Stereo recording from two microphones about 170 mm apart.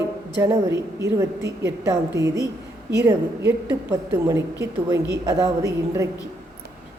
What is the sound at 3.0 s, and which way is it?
A woman's voice, 15° right (ahead or behind).